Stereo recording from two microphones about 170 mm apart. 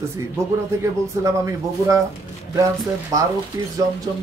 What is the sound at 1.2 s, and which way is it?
Speech, 20° right (ahead or behind).